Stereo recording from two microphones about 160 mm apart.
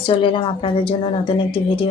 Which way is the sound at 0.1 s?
35° left (ahead or behind).